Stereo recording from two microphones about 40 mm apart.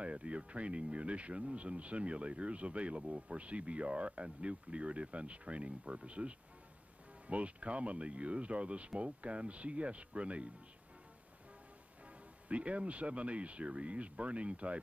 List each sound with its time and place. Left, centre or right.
0.0 s speech: right
12.4 s speech: right